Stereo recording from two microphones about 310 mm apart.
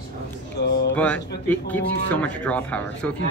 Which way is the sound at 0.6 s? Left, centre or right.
Left.